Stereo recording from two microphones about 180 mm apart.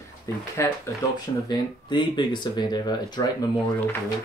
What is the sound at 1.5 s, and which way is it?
Speech, 25° left (ahead or behind).